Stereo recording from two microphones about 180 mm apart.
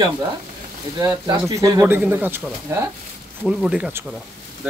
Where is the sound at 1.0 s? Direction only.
25° right (ahead or behind); by 4.2 s 5° right (ahead or behind).